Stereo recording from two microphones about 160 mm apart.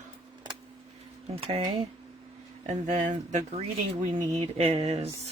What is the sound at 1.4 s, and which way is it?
Speech, 35° right (ahead or behind).